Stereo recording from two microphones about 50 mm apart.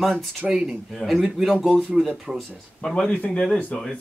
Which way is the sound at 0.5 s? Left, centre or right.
Centre.